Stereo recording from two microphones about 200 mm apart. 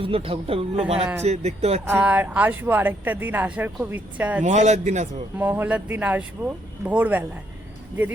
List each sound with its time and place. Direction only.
0.0 s a man's voice: 25° right (ahead or behind)
1.9 s speech: 5° right (ahead or behind)
4.4 s speech: 35° right (ahead or behind)
5.4 s speech: 10° right (ahead or behind)